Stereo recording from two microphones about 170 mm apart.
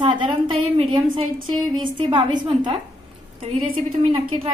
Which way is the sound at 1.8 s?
30° right (ahead or behind).